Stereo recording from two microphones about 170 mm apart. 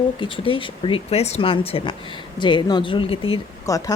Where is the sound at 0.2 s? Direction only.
30° left (ahead or behind).